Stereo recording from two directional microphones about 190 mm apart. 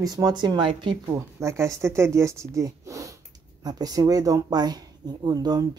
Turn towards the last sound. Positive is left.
turn(degrees=-20)  # may be behind; listen again after turning